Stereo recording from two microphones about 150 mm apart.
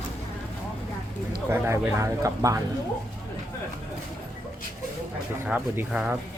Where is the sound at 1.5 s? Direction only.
15° right (ahead or behind).